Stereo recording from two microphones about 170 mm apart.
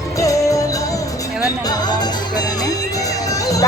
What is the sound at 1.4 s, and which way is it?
Speech, 20° left (ahead or behind).